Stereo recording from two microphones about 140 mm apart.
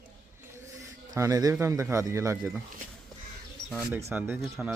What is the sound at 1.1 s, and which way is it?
A man's voice, 25° right (ahead or behind).